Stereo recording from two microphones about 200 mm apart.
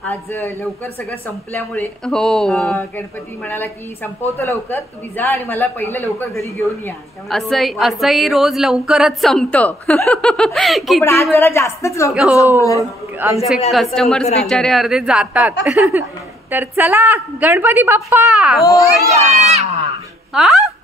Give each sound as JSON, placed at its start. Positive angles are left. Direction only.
{"t": 0.0, "sound": "a woman's voice", "side_deg": 10}
{"t": 7.2, "sound": "a woman's voice", "side_deg": 0}
{"t": 11.3, "sound": "a woman's voice", "side_deg": 15}
{"t": 12.1, "sound": "a woman's voice", "side_deg": -5}
{"t": 13.9, "sound": "a woman's voice", "side_deg": 0}
{"t": 18.6, "sound": "a woman's voice", "side_deg": 15}
{"t": 18.9, "sound": "a woman's voice", "side_deg": -15}
{"t": 19.2, "sound": "a child's voice", "side_deg": -35}
{"t": 20.3, "sound": "speech", "side_deg": 0}